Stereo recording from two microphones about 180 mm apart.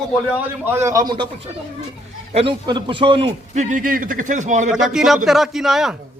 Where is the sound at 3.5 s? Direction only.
40° right (ahead or behind).